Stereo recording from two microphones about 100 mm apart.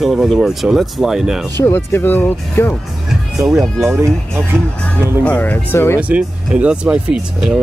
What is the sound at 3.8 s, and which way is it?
Speech, 25° right (ahead or behind).